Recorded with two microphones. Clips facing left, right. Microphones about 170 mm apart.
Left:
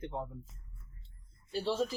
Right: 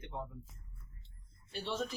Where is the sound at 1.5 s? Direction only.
35° left (ahead or behind).